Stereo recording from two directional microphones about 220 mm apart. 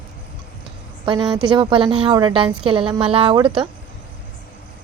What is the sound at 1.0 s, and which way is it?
A woman's voice, 20° right (ahead or behind).